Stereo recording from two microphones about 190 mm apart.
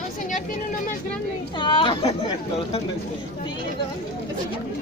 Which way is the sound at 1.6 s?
25° left (ahead or behind).